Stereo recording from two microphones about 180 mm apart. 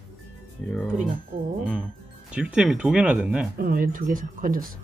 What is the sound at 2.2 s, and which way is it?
Speech, 5° right (ahead or behind).